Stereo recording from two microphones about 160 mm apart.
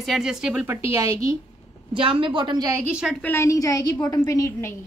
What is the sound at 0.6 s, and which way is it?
Speech, 15° right (ahead or behind).